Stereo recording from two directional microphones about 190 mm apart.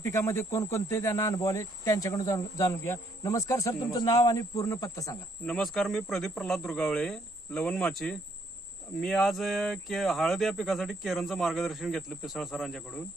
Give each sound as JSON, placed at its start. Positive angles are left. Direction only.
{"t": 0.0, "sound": "speech", "side_deg": 15}
{"t": 5.4, "sound": "speech", "side_deg": 5}